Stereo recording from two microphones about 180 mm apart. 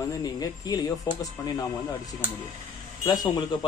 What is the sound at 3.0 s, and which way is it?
Speech, 20° left (ahead or behind).